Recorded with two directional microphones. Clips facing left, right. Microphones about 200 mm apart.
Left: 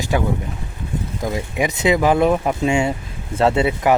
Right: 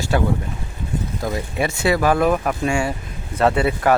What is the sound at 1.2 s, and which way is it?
Speech, 15° left (ahead or behind).